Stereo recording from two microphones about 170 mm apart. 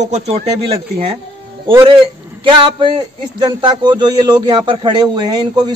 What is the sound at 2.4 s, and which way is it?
A man's voice, 30° right (ahead or behind).